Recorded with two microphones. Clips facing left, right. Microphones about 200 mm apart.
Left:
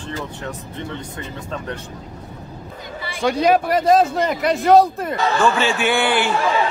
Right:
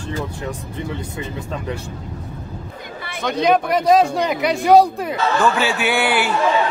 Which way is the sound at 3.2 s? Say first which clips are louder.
Left 1 dB; 5° left (ahead or behind).